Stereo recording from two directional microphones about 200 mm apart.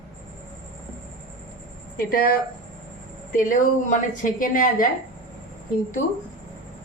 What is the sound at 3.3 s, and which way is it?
A woman's voice, 40° left (ahead or behind).